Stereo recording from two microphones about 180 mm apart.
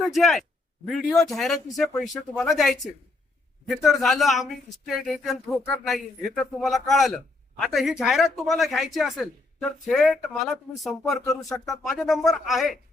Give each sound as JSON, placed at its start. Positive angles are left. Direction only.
{"t": 0.0, "sound": "a man's voice", "side_deg": 0}
{"t": 11.4, "sound": "speech", "side_deg": 20}
{"t": 11.7, "sound": "a man's voice", "side_deg": 0}